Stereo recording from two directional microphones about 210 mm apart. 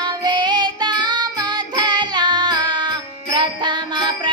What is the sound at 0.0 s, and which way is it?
Music, 20° right (ahead or behind).